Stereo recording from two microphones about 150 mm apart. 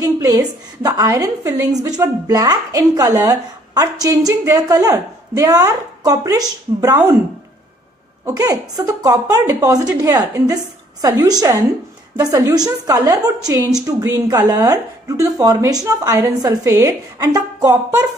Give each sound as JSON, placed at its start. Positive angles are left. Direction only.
{"t": 0.0, "sound": "a woman's voice", "side_deg": -25}
{"t": 8.4, "sound": "a woman's voice", "side_deg": -25}